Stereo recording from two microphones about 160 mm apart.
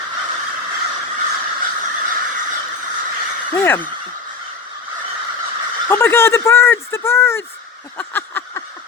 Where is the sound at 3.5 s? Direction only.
15° left (ahead or behind).